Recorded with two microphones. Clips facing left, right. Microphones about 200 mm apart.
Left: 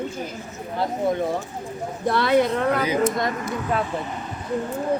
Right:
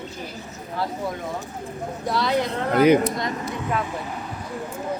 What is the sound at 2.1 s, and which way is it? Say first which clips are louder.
Speech: left 4 dB; 60° left (ahead or behind).